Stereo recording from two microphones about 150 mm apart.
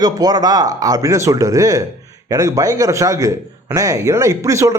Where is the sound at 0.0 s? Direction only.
25° right (ahead or behind).